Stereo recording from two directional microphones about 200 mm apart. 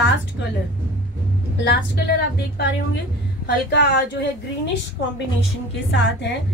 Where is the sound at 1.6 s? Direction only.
55° left (ahead or behind).